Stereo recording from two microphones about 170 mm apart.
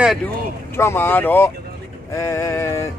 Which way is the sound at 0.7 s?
15° left (ahead or behind).